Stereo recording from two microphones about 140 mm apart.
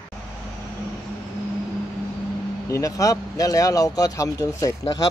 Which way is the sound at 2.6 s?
20° left (ahead or behind).